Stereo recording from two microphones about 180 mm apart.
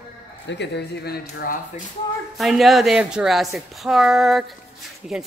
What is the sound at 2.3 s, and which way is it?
Speech, centre (ahead or behind).